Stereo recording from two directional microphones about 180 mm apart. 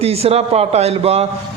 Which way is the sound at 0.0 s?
35° right (ahead or behind).